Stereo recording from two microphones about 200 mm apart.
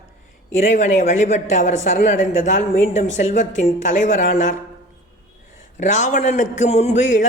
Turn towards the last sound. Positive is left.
turn(degrees=40)  # may be behind; listen again after turning